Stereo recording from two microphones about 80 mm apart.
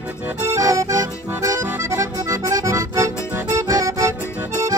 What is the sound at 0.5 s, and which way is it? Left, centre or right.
Accordion, right.